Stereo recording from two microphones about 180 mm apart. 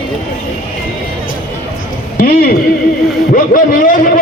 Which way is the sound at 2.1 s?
55° left (ahead or behind).